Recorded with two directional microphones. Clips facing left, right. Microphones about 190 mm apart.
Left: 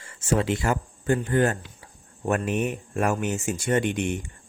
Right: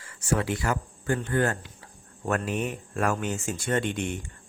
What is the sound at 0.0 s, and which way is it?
Speech, 25° left (ahead or behind).